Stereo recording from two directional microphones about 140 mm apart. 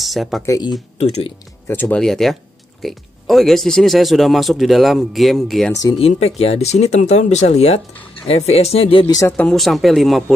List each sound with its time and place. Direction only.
0.0 s speech: centre (ahead or behind)
0.5 s speech: 30° left (ahead or behind)
0.9 s speech: 50° left (ahead or behind)
1.7 s speech: 10° left (ahead or behind)
5.9 s speech: 45° left (ahead or behind)
9.4 s speech: 5° left (ahead or behind)